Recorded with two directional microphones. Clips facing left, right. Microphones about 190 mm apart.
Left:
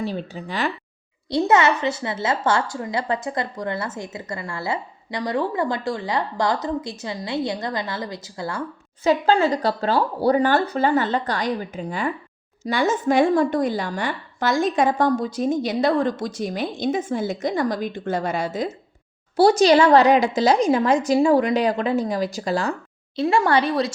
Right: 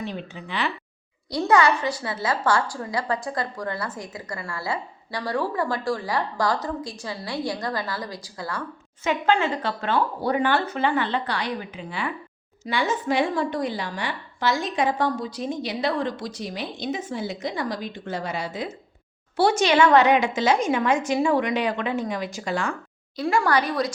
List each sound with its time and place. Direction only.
0.0 s a woman's voice: 35° left (ahead or behind)
1.3 s a woman's voice: 25° left (ahead or behind); by 18.7 s 45° left (ahead or behind)
19.4 s a woman's voice: 35° left (ahead or behind)
23.1 s a woman's voice: 25° left (ahead or behind)